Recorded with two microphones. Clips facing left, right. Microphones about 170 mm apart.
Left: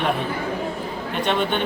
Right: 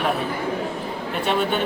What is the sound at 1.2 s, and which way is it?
Speech, 5° right (ahead or behind).